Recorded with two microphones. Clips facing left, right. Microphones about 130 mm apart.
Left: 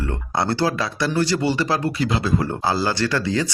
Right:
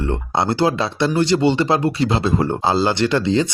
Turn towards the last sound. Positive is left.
turn(degrees=-20)  # may be behind; listen again after turning